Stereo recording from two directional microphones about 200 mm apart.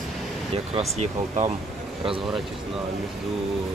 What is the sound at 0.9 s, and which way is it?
Speech, 35° right (ahead or behind).